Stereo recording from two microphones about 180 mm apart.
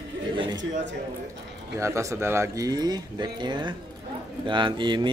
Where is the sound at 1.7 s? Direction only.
15° right (ahead or behind).